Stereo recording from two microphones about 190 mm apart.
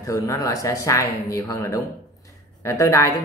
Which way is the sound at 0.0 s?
15° left (ahead or behind).